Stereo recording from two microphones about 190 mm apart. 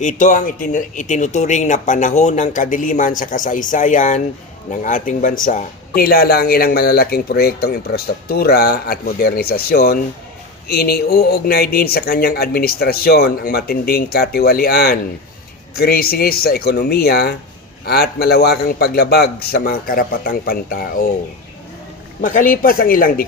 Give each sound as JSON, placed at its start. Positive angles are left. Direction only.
{"t": 0.0, "sound": "a man's voice", "side_deg": 40}
{"t": 22.2, "sound": "a man's voice", "side_deg": 40}